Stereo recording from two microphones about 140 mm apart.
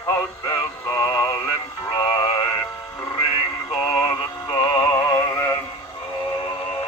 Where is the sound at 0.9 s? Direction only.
25° left (ahead or behind).